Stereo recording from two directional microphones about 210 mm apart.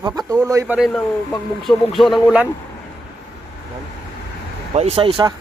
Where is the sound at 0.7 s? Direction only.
Centre (ahead or behind).